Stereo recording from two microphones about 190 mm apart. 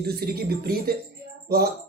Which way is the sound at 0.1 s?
55° right (ahead or behind).